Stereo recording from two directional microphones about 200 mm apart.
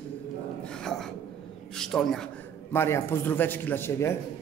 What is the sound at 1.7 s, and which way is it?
A man's voice, centre (ahead or behind).